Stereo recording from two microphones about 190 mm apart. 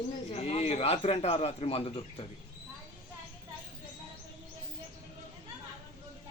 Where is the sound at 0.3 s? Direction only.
35° left (ahead or behind).